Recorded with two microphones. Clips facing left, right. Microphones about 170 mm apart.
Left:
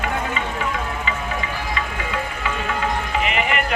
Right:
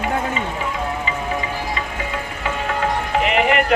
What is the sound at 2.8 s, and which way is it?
Music, 60° right (ahead or behind).